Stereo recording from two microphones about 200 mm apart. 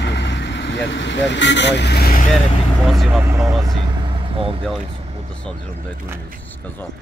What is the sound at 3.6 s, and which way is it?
Vehicle, 20° right (ahead or behind).